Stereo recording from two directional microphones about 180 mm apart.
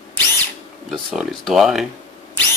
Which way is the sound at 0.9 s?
Centre (ahead or behind).